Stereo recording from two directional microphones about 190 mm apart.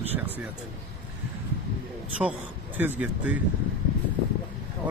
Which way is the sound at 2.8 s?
10° right (ahead or behind).